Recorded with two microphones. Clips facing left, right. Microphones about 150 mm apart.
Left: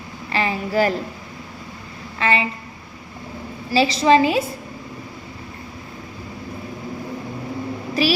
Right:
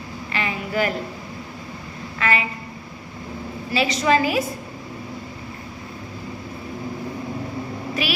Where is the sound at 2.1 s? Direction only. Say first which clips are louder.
Left 3 dB; 30° left (ahead or behind).